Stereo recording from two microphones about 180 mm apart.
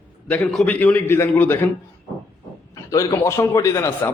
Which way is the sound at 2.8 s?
15° left (ahead or behind).